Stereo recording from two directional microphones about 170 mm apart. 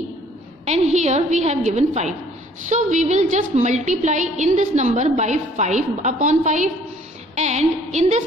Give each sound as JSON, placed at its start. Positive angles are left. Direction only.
{"t": 0.7, "sound": "a woman's voice", "side_deg": -40}